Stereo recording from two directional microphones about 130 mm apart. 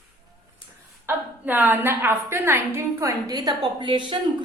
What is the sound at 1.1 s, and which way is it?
A woman's voice, 15° right (ahead or behind).